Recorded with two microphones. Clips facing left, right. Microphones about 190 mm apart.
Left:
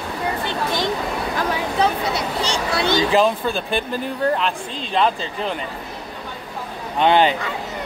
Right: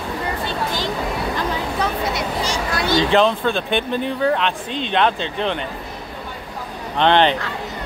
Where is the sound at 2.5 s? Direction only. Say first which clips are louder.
Left 3 dB; 25° left (ahead or behind).